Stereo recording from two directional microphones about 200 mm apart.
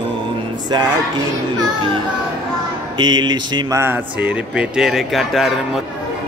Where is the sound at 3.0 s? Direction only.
20° right (ahead or behind); by 5.5 s centre (ahead or behind).